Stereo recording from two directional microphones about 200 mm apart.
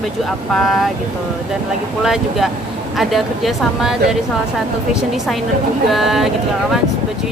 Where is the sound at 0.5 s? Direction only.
Centre (ahead or behind).